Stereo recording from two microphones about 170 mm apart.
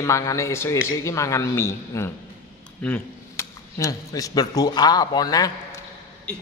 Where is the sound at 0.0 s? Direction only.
20° left (ahead or behind).